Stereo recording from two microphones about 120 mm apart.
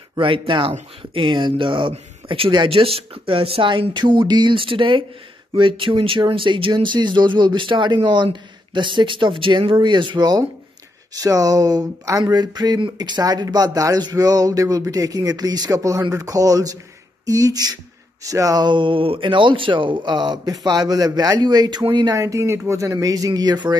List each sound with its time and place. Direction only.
0.1 s speech: 45° right (ahead or behind)